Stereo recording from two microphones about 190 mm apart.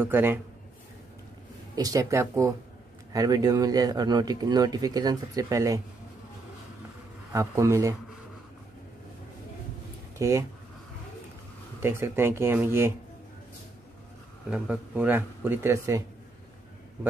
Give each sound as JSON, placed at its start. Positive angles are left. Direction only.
{"t": 0.0, "sound": "speech", "side_deg": -10}
{"t": 1.8, "sound": "speech", "side_deg": -15}
{"t": 7.3, "sound": "speech", "side_deg": -15}
{"t": 10.1, "sound": "speech", "side_deg": -15}
{"t": 11.8, "sound": "speech", "side_deg": -15}
{"t": 14.5, "sound": "speech", "side_deg": -5}